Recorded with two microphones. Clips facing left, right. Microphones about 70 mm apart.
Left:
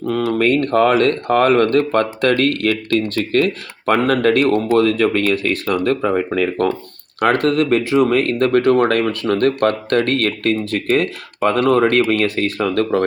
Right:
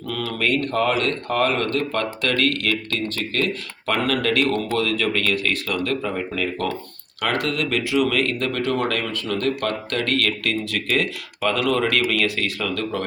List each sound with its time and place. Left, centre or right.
0.3 s speech: left